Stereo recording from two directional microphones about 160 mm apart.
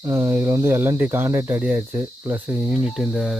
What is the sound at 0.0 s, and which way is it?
Speech, 20° right (ahead or behind).